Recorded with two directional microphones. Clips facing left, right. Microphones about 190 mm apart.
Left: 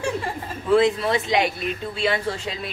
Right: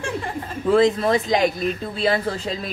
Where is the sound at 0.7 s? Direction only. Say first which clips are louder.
Right 1 dB; 40° right (ahead or behind).